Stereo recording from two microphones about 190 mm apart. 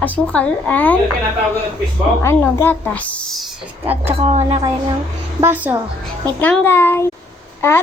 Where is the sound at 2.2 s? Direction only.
10° left (ahead or behind).